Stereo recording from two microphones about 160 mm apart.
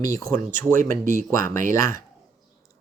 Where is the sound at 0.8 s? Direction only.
60° right (ahead or behind).